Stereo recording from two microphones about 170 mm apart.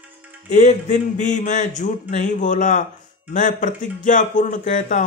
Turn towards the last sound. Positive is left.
turn(degrees=50)  # may be behind; listen again after turning